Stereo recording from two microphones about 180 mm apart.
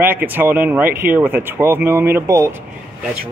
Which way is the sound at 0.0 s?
10° right (ahead or behind).